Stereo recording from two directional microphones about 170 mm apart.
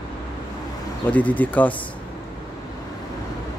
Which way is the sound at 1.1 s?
10° left (ahead or behind).